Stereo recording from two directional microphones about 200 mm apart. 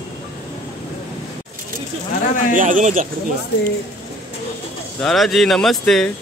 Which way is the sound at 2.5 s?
40° right (ahead or behind).